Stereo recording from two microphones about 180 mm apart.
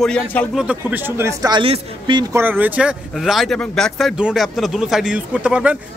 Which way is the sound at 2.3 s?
10° right (ahead or behind).